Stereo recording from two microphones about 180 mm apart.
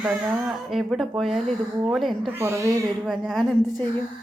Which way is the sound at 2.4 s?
15° right (ahead or behind).